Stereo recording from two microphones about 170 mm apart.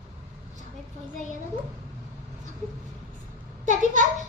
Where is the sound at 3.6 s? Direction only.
45° right (ahead or behind).